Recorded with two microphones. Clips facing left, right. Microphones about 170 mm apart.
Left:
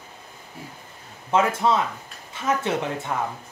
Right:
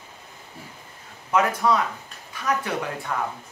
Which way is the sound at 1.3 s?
25° left (ahead or behind).